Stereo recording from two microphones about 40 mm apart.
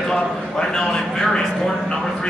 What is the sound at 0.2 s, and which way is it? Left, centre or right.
A man's voice, centre.